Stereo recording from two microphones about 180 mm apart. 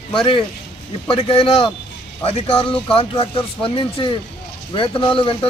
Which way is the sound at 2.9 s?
30° left (ahead or behind).